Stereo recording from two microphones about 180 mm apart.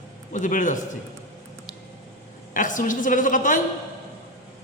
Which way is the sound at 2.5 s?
45° left (ahead or behind).